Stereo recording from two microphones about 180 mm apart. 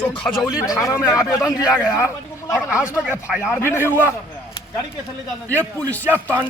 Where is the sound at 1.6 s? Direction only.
5° right (ahead or behind).